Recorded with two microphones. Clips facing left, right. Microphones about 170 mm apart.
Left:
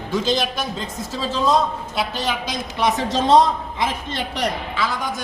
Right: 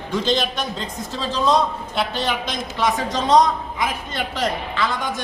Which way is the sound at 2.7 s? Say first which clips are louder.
Left 2 dB; 20° left (ahead or behind).